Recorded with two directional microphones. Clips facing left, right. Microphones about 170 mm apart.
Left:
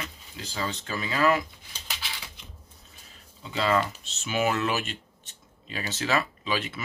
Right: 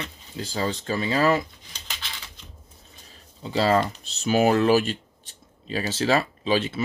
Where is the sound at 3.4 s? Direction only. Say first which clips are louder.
Right 4 dB; 35° right (ahead or behind).